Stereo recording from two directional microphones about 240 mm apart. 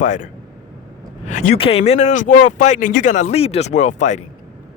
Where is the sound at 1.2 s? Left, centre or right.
Left.